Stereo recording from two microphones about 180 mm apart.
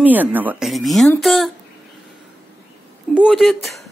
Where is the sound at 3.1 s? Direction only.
5° right (ahead or behind).